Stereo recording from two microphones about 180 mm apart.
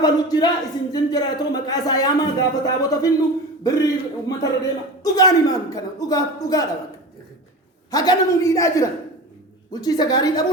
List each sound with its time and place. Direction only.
0.0 s a man's voice: 20° left (ahead or behind)
7.9 s a man's voice: 20° left (ahead or behind)